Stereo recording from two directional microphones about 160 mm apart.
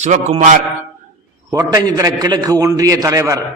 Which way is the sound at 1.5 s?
25° right (ahead or behind).